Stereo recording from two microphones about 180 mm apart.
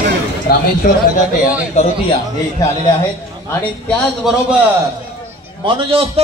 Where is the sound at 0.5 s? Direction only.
55° left (ahead or behind).